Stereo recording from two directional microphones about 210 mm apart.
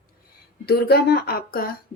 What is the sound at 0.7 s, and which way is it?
Speech, 50° left (ahead or behind).